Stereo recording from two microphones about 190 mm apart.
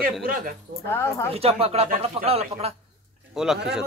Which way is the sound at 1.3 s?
30° right (ahead or behind).